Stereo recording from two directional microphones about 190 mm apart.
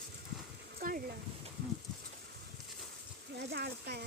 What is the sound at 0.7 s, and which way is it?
Speech, 50° right (ahead or behind).